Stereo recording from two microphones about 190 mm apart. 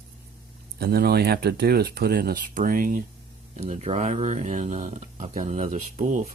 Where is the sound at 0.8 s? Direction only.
55° right (ahead or behind).